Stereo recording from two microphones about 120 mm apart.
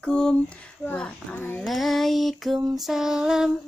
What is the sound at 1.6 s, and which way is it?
Female singing, centre (ahead or behind).